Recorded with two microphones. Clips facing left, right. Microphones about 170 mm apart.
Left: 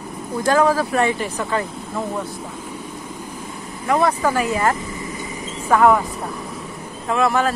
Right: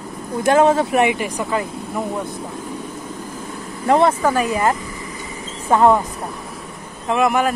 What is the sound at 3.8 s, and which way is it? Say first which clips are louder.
Speech: right 3 dB; 25° right (ahead or behind).